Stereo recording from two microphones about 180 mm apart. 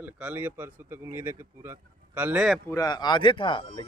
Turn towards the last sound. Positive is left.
turn(degrees=30)  # may be behind; listen again after turning